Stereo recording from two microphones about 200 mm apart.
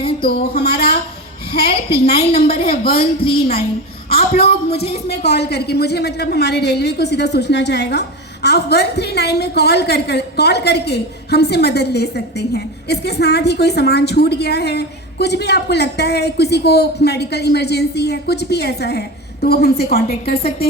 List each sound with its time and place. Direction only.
0.4 s a sound: 50° left (ahead or behind)
1.5 s a woman's voice: 50° left (ahead or behind)
2.1 s a woman's voice: 30° left (ahead or behind)
2.6 s speech: 50° left (ahead or behind)
3.0 s a woman's voice: 25° left (ahead or behind)
5.0 s a woman's voice: 55° left (ahead or behind)